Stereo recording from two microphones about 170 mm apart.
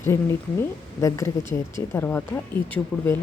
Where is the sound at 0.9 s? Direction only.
20° left (ahead or behind).